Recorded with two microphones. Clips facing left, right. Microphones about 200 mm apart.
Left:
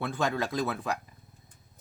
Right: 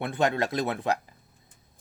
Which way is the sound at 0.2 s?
70° right (ahead or behind).